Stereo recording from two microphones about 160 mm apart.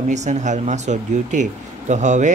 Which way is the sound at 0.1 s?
45° right (ahead or behind).